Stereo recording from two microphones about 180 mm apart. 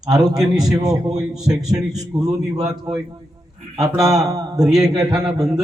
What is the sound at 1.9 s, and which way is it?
Speech, 20° right (ahead or behind).